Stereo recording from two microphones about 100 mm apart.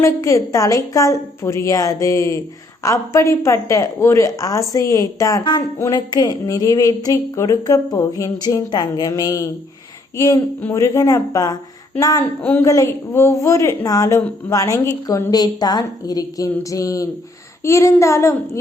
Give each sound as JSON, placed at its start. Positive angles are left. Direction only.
{"t": 0.0, "sound": "a woman's voice", "side_deg": 30}
{"t": 12.2, "sound": "speech", "side_deg": 15}
{"t": 12.6, "sound": "a woman's voice", "side_deg": 35}
{"t": 17.6, "sound": "child singing", "side_deg": 30}